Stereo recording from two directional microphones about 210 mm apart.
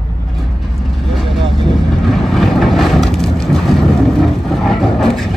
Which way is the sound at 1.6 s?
Centre (ahead or behind).